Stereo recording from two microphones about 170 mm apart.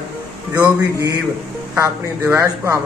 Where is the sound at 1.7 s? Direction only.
15° right (ahead or behind).